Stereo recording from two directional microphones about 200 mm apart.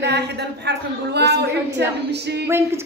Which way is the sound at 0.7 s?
55° right (ahead or behind).